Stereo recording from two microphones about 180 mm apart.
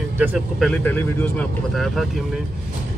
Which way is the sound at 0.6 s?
5° left (ahead or behind).